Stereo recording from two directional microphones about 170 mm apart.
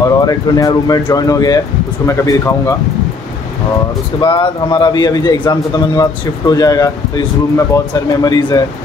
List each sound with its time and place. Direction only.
0.0 s a man's voice: 20° left (ahead or behind)
4.2 s a man's voice: 30° left (ahead or behind)